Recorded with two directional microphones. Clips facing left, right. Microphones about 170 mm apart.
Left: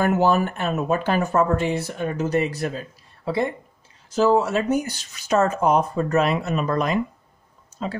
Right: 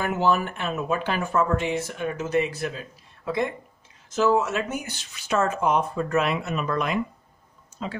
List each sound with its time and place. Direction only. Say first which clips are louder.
0.0 s speech: left 4 dB; 40° left (ahead or behind)